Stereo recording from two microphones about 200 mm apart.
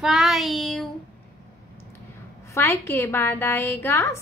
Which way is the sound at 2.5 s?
15° left (ahead or behind).